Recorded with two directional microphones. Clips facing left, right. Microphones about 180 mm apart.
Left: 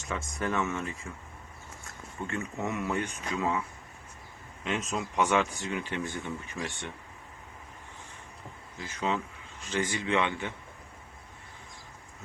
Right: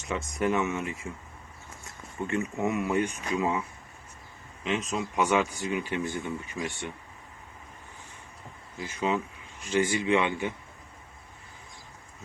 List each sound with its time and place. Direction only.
0.1 s speech: 15° right (ahead or behind)
2.2 s speech: 15° right (ahead or behind)
4.6 s speech: centre (ahead or behind)
8.8 s speech: 10° right (ahead or behind)